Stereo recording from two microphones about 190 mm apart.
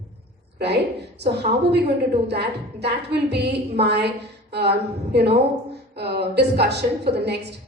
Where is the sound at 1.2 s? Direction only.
60° right (ahead or behind).